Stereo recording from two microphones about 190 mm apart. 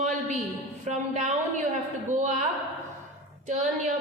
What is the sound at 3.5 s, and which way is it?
Speech, 40° right (ahead or behind).